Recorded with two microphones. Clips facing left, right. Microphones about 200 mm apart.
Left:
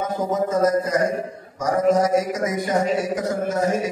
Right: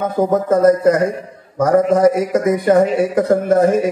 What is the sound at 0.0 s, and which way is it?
A man's voice, 60° right (ahead or behind).